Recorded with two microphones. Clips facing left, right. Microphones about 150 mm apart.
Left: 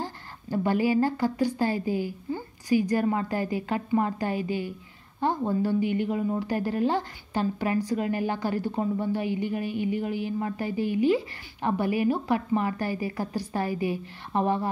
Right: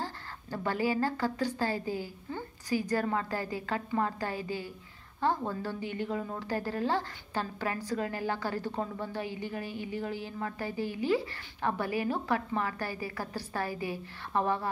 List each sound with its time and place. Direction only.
0.0 s a woman's voice: 15° left (ahead or behind)